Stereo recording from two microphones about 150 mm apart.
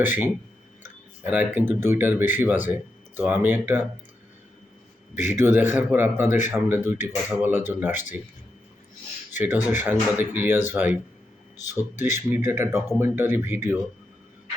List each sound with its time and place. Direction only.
0.0 s speech: 15° right (ahead or behind)
1.3 s speech: 10° right (ahead or behind)
5.3 s speech: 15° right (ahead or behind)
6.2 s speech: 55° left (ahead or behind)
6.5 s speech: 15° right (ahead or behind)
9.4 s speech: 10° right (ahead or behind)